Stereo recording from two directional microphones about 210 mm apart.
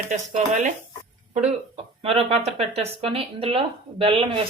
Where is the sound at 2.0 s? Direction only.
30° right (ahead or behind).